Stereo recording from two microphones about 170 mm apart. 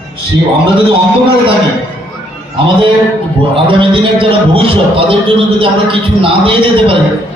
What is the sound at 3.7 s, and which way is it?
A man's voice, 30° right (ahead or behind).